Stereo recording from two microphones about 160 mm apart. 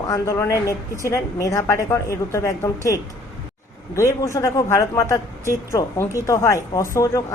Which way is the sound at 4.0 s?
20° left (ahead or behind).